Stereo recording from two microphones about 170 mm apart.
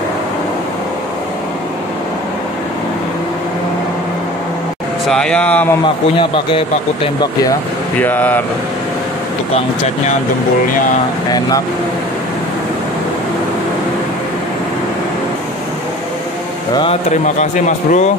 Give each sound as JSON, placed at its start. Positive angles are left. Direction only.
{"t": 5.0, "sound": "speech", "side_deg": 5}
{"t": 6.1, "sound": "speech", "side_deg": 30}
{"t": 8.0, "sound": "speech", "side_deg": 10}
{"t": 17.4, "sound": "speech", "side_deg": 45}